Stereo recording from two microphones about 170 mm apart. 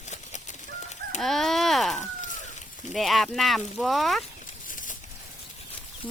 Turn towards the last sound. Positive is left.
turn(degrees=50)  # may be behind; listen again after turning